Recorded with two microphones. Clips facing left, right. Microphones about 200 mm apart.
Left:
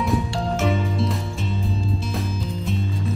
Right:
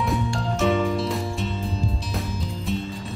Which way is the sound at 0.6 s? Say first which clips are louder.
Right 3 dB; centre (ahead or behind).